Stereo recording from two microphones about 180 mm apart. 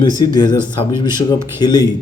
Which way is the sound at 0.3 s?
25° left (ahead or behind).